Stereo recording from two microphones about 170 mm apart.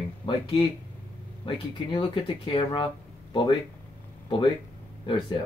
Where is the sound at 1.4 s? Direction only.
30° left (ahead or behind).